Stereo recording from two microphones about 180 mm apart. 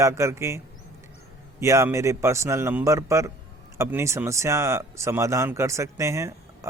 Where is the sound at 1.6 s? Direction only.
15° right (ahead or behind).